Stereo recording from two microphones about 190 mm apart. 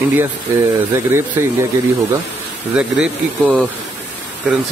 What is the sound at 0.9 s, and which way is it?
Speech, 15° right (ahead or behind).